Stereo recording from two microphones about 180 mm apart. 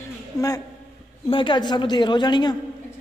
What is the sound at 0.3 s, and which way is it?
A man's voice, 15° left (ahead or behind).